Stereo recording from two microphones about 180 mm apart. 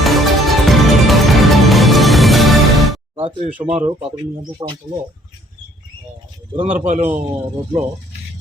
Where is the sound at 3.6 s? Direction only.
30° right (ahead or behind).